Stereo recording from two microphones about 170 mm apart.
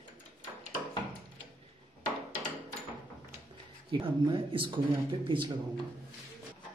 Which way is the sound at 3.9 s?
30° right (ahead or behind).